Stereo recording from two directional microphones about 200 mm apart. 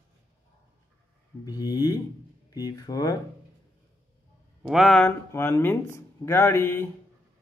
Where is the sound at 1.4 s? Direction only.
20° left (ahead or behind).